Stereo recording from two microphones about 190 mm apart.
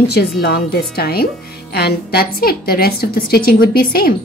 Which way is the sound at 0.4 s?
55° left (ahead or behind).